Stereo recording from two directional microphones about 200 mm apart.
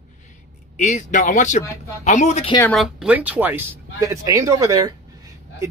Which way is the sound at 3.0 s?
10° right (ahead or behind).